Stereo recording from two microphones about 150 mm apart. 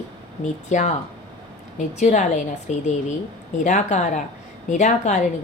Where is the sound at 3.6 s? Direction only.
55° left (ahead or behind).